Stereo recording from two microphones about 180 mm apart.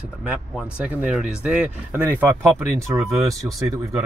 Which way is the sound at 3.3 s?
Centre (ahead or behind).